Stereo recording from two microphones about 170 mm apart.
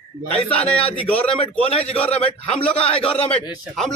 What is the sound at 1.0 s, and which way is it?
Speech, 10° left (ahead or behind).